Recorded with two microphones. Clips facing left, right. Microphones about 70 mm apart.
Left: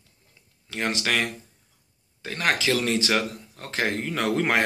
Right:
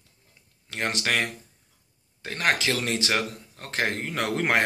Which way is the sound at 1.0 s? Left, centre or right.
Right.